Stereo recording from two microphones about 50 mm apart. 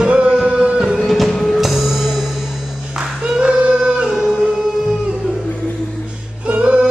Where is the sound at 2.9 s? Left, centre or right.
Centre.